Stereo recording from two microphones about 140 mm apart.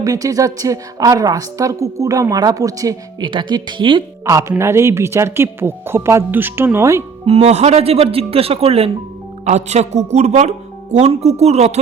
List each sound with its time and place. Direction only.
0.0 s a woman's voice: 25° right (ahead or behind)
4.3 s a woman's voice: 20° right (ahead or behind)
7.3 s speech: 50° right (ahead or behind)